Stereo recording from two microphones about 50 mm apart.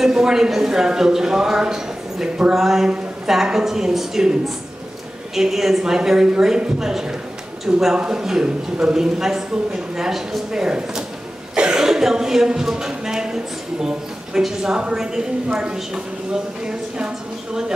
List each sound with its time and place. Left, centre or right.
0.0 s speech: centre